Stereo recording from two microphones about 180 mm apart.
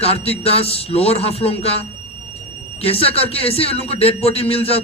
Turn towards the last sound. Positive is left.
turn(degrees=30)  # may be behind; listen again after turning